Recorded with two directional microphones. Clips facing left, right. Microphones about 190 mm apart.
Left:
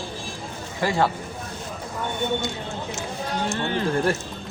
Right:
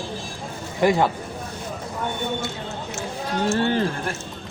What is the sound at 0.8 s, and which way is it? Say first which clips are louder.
Speech: right 4 dB; 20° right (ahead or behind).